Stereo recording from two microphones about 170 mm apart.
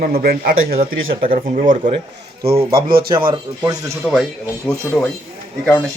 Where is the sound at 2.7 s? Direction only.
60° right (ahead or behind).